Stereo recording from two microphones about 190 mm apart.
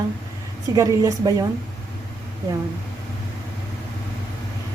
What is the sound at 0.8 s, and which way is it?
Speech, 20° right (ahead or behind).